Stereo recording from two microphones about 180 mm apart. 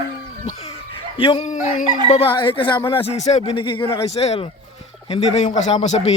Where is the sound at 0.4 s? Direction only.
35° left (ahead or behind).